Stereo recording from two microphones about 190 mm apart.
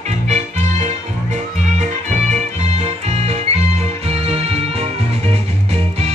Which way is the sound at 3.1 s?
35° right (ahead or behind).